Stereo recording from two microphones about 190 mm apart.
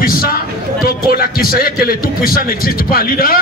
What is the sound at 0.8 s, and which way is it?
A man's voice, 50° left (ahead or behind).